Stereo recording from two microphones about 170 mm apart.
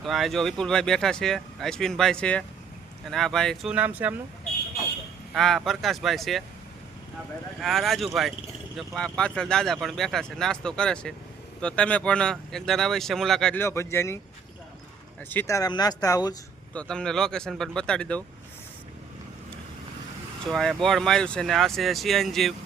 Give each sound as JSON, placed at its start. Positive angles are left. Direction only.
{"t": 0.0, "sound": "speech", "side_deg": 0}
{"t": 5.3, "sound": "speech", "side_deg": 0}
{"t": 7.6, "sound": "speech", "side_deg": 0}
{"t": 13.6, "sound": "speech", "side_deg": 15}
{"t": 15.3, "sound": "speech", "side_deg": 15}
{"t": 16.7, "sound": "speech", "side_deg": 5}
{"t": 20.5, "sound": "speech", "side_deg": 0}